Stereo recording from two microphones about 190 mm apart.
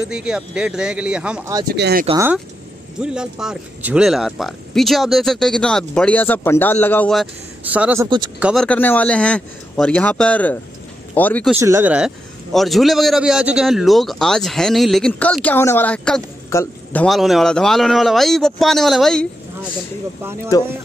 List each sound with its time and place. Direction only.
0.1 s a man's voice: 5° right (ahead or behind)
1.7 s speech: 55° right (ahead or behind)
3.0 s a man's voice: 5° right (ahead or behind)
7.6 s a man's voice: 10° right (ahead or behind)
8.6 s speech: 10° left (ahead or behind)
11.6 s a man's voice: 10° right (ahead or behind)
20.5 s speech: 20° left (ahead or behind)